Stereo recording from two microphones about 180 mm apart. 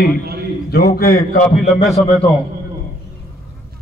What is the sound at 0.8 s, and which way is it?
Speech, 55° left (ahead or behind).